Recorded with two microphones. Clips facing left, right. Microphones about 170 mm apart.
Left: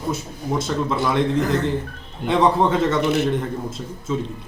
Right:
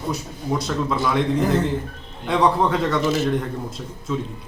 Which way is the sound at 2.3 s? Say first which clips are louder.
Left 1 dB; centre (ahead or behind).